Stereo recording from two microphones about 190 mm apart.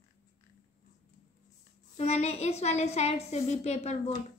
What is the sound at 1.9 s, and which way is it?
A woman's voice, 35° left (ahead or behind).